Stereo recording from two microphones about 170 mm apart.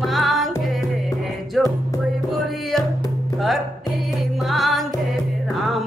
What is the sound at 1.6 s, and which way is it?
Music, centre (ahead or behind).